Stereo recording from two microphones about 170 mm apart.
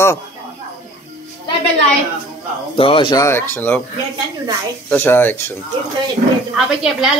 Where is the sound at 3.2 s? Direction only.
15° left (ahead or behind).